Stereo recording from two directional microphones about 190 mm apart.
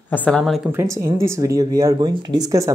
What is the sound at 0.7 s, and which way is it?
Speech, 15° right (ahead or behind).